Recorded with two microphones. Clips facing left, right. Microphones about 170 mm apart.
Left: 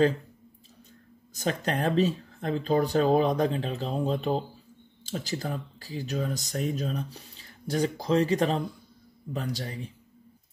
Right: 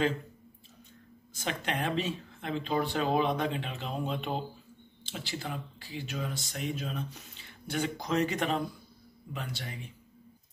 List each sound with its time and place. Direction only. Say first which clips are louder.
1.3 s speech: left 5 dB; 40° left (ahead or behind)